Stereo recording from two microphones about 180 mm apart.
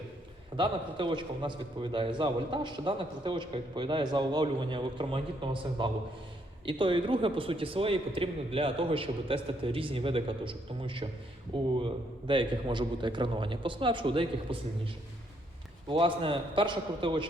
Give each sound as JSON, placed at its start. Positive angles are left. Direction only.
{"t": 0.5, "sound": "a man's voice", "side_deg": -25}
{"t": 15.9, "sound": "a man's voice", "side_deg": -30}